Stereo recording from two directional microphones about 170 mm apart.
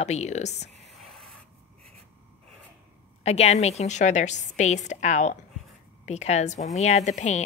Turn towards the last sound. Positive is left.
turn(degrees=45)  # may be behind; listen again after turning